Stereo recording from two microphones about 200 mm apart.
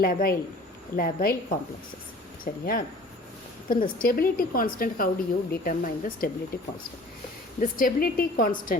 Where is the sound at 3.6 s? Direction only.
45° left (ahead or behind).